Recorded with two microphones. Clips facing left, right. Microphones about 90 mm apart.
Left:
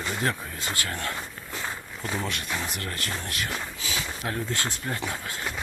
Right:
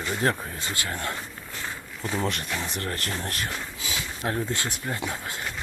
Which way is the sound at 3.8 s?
25° right (ahead or behind).